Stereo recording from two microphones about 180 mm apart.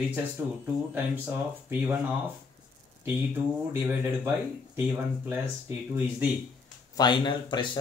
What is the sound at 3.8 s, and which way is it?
Speech, 10° right (ahead or behind).